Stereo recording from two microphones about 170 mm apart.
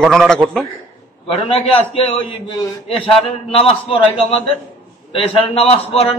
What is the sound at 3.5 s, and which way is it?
Speech, 35° left (ahead or behind).